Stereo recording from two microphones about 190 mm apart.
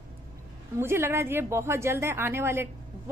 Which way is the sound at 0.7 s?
15° right (ahead or behind).